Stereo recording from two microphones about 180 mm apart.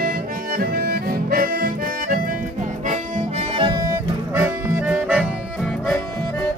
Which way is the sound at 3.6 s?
25° right (ahead or behind).